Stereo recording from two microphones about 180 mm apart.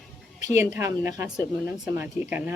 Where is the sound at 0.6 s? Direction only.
15° right (ahead or behind).